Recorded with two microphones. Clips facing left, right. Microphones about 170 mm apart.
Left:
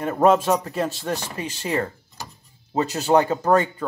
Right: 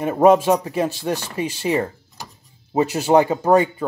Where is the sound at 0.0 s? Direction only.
15° right (ahead or behind).